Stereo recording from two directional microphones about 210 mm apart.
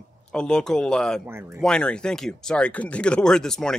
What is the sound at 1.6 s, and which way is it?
Speech, 5° left (ahead or behind).